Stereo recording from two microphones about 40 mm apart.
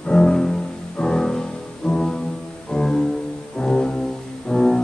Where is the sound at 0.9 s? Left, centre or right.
Centre.